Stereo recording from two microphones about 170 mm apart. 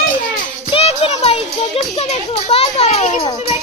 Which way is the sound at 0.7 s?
35° left (ahead or behind).